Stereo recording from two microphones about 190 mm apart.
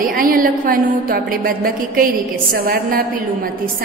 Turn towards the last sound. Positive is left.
turn(degrees=-45)  # may be behind; listen again after turning